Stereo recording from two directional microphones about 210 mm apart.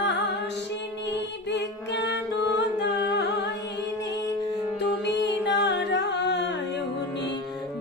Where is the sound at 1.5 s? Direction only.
55° left (ahead or behind).